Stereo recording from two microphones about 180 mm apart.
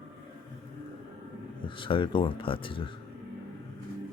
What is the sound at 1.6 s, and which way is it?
Speech, 30° left (ahead or behind).